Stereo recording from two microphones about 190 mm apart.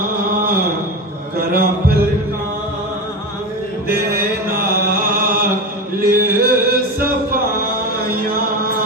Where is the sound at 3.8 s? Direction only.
50° right (ahead or behind).